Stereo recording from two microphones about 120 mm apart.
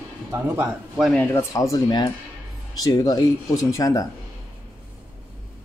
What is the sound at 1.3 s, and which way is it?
Speech, 25° left (ahead or behind).